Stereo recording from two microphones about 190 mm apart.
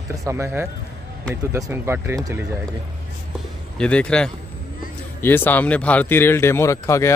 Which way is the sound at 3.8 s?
5° left (ahead or behind).